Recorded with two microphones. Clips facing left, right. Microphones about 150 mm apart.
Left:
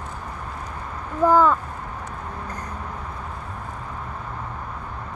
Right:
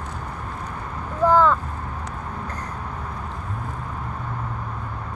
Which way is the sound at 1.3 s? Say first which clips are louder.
Even; 10° left (ahead or behind).